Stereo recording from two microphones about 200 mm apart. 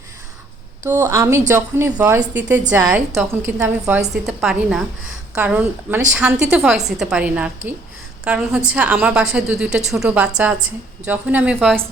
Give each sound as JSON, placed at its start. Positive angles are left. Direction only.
{"t": 0.9, "sound": "a woman's voice", "side_deg": -10}